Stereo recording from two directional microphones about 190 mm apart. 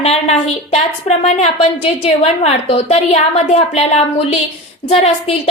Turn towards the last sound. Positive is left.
turn(degrees=30)  # may be behind; listen again after turning